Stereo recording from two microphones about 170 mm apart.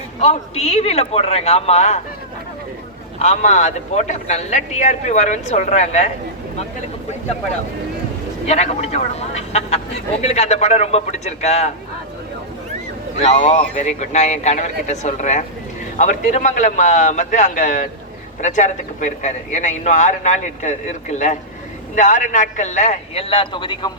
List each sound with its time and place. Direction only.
0.2 s a man's voice: 35° left (ahead or behind)
3.2 s a man's voice: 45° left (ahead or behind)
8.4 s a man's voice: 40° left (ahead or behind)
13.1 s a man's voice: 40° left (ahead or behind)
23.3 s a man's voice: 30° left (ahead or behind)